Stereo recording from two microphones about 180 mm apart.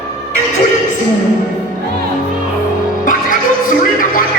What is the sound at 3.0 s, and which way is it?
Music, 50° left (ahead or behind).